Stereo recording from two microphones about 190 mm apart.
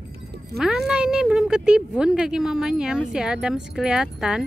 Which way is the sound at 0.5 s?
5° right (ahead or behind).